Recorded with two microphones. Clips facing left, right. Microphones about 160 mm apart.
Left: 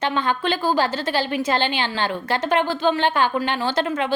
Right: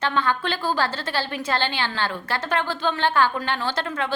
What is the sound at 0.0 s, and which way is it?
A woman's voice, 15° left (ahead or behind).